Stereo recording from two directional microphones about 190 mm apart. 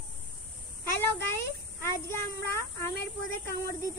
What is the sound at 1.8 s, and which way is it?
Speech, 15° left (ahead or behind).